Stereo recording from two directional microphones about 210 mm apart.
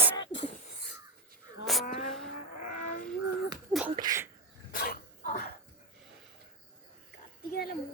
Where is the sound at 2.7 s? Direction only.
35° left (ahead or behind).